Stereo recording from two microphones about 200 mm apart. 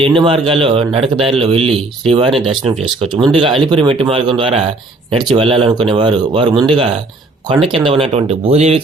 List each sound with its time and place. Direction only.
0.2 s speech: 25° right (ahead or behind)
2.3 s speech: centre (ahead or behind)
3.2 s speech: 25° right (ahead or behind)